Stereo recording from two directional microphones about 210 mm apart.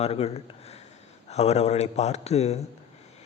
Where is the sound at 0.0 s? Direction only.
30° left (ahead or behind).